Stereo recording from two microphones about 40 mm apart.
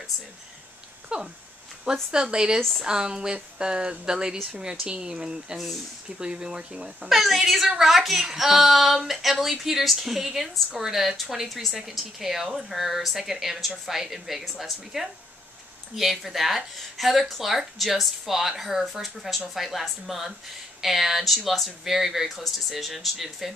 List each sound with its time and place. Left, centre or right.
1.0 s a sound: right
1.9 s speech: centre
7.1 s a woman's voice: centre